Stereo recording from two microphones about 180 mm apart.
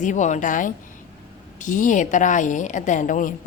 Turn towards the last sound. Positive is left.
turn(degrees=45)  # may be behind; listen again after turning